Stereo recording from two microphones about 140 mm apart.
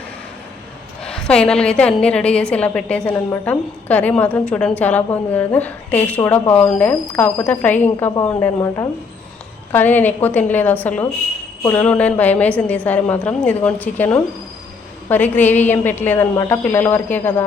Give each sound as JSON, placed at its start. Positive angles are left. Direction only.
{"t": 1.0, "sound": "a woman's voice", "side_deg": 5}